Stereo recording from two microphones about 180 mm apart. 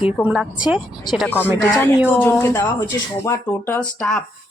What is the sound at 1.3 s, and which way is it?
Speech, 10° left (ahead or behind).